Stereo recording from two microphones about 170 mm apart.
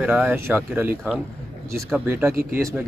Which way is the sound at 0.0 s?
10° right (ahead or behind).